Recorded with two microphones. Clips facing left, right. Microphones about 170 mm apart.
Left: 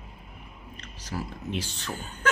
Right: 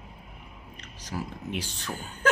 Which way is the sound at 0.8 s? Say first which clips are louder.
Even; 15° right (ahead or behind).